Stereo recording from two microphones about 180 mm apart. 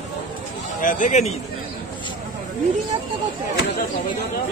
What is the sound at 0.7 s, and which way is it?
Speech, 45° left (ahead or behind).